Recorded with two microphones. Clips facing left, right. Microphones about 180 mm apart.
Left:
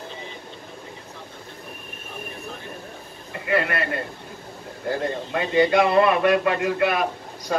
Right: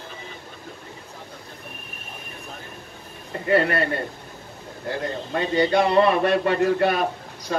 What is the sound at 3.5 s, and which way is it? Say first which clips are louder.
Speech: right 3 dB; 30° right (ahead or behind).